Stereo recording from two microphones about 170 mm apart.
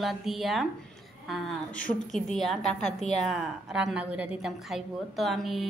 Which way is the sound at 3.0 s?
40° left (ahead or behind).